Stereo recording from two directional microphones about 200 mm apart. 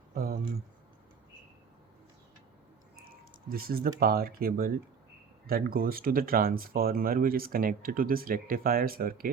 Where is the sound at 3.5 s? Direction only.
50° right (ahead or behind).